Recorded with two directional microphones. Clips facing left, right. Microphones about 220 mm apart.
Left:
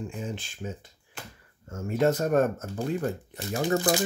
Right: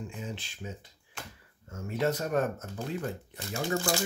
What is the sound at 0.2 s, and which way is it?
Speech, 50° left (ahead or behind).